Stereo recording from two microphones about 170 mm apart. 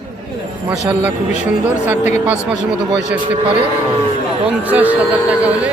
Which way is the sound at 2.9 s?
90° right.